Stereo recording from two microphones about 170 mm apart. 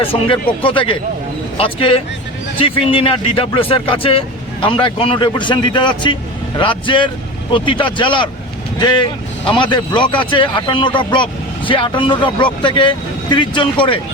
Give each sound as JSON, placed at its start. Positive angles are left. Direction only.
{"t": 0.0, "sound": "speech", "side_deg": 30}
{"t": 9.5, "sound": "speech", "side_deg": 30}